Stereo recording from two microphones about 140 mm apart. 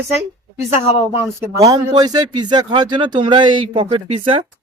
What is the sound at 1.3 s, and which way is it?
Speech, 20° right (ahead or behind).